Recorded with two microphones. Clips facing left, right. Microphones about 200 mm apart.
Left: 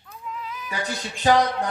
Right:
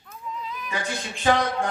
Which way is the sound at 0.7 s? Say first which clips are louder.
Even; 35° left (ahead or behind).